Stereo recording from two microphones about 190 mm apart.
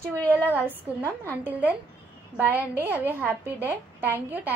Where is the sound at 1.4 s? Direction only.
10° right (ahead or behind).